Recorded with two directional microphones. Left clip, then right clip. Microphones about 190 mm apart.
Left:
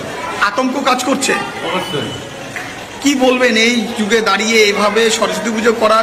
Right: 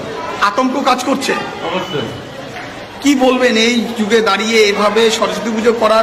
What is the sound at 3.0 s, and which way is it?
A man's voice, 10° right (ahead or behind).